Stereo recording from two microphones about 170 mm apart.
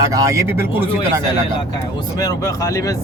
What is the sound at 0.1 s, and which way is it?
Speech, 20° right (ahead or behind).